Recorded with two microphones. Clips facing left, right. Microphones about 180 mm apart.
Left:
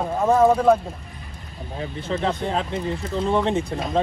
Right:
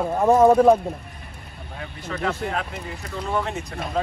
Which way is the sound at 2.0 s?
30° left (ahead or behind).